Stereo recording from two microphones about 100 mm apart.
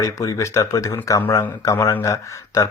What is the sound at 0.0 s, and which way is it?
Speech, 30° left (ahead or behind).